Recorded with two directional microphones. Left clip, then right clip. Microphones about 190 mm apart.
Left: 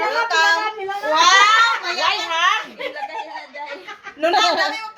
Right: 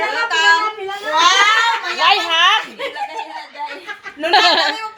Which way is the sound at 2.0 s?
55° right (ahead or behind).